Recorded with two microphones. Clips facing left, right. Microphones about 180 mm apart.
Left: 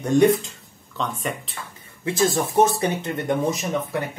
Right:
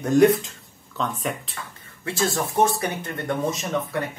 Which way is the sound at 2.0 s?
20° left (ahead or behind).